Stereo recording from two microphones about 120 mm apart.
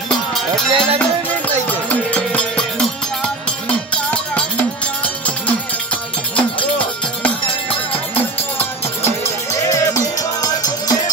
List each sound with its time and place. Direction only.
0.7 s music: 50° right (ahead or behind)
1.7 s music: 10° left (ahead or behind)
3.9 s music: 10° left (ahead or behind)
8.1 s music: 15° left (ahead or behind)